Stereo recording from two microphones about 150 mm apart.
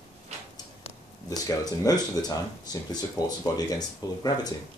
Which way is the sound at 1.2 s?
25° left (ahead or behind).